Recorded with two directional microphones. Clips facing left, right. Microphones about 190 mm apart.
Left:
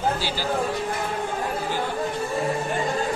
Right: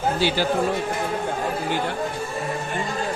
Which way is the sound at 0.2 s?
65° right (ahead or behind).